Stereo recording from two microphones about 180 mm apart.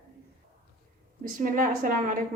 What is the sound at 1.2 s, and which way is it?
Speech, 50° right (ahead or behind).